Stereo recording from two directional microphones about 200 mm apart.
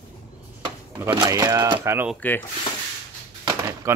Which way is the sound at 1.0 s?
15° right (ahead or behind).